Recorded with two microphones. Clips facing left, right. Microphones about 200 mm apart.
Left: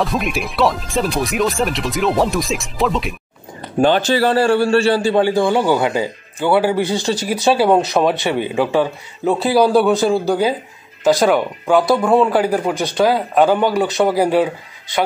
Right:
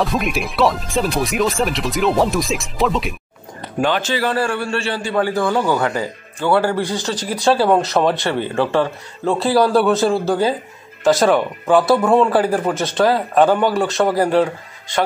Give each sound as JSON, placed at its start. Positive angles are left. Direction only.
{"t": 0.0, "sound": "speech", "side_deg": 0}
{"t": 3.8, "sound": "a man's voice", "side_deg": 35}
{"t": 6.5, "sound": "speech", "side_deg": 5}
{"t": 9.3, "sound": "speech", "side_deg": 0}